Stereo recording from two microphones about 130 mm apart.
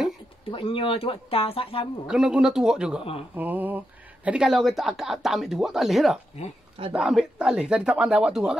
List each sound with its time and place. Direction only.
0.5 s speech: 40° left (ahead or behind)
2.0 s speech: 5° right (ahead or behind)